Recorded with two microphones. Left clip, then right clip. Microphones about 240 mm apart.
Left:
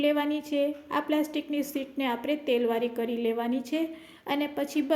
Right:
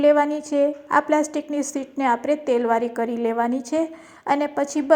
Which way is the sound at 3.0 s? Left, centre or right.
Right.